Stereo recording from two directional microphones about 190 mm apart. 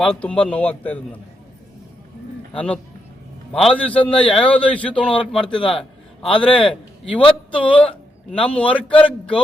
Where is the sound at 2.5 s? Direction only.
5° left (ahead or behind).